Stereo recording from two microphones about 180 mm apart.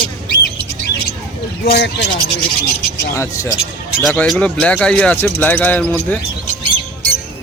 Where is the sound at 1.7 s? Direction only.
70° left (ahead or behind).